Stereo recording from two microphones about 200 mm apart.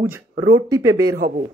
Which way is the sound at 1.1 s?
45° right (ahead or behind).